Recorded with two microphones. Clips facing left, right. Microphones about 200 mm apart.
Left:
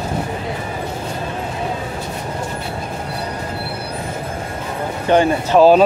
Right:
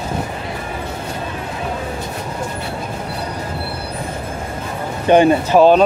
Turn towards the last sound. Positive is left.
turn(degrees=5)  # may be behind; listen again after turning